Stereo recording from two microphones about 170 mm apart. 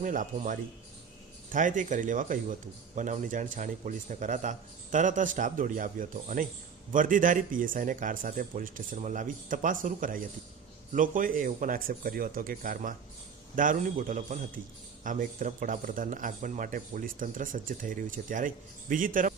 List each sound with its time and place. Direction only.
0.0 s speech: 50° right (ahead or behind)